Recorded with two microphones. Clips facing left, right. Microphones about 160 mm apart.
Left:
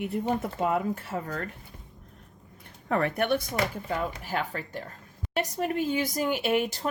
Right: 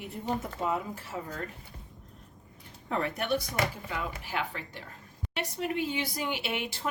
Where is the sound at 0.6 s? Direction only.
60° left (ahead or behind).